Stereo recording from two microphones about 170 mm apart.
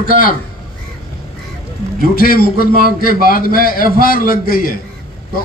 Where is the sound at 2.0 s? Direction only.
60° left (ahead or behind).